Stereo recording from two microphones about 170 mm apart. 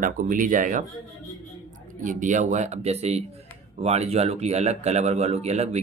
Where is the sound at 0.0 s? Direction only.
50° right (ahead or behind).